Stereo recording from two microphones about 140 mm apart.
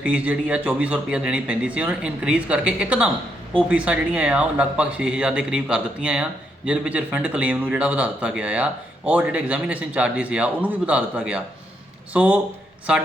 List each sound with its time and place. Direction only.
0.0 s speech: 10° right (ahead or behind)